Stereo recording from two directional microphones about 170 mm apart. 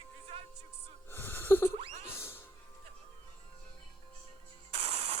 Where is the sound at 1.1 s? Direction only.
10° left (ahead or behind).